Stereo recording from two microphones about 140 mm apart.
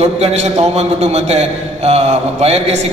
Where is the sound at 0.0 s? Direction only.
50° right (ahead or behind).